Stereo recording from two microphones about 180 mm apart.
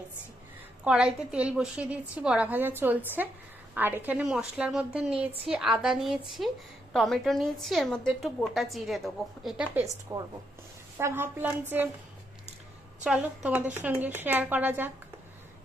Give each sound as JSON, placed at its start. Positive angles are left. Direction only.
{"t": 0.9, "sound": "a woman's voice", "side_deg": -5}
{"t": 9.7, "sound": "a woman's voice", "side_deg": -20}
{"t": 13.0, "sound": "a woman's voice", "side_deg": -5}